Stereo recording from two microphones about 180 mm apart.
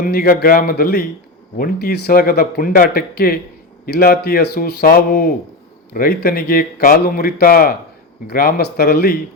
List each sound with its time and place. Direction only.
0.0 s a man's voice: 55° left (ahead or behind)